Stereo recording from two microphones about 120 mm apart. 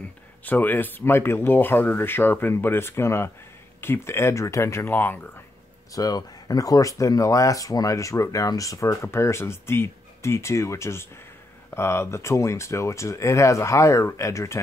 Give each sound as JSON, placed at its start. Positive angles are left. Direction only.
{"t": 0.5, "sound": "speech", "side_deg": 15}
{"t": 5.9, "sound": "speech", "side_deg": 35}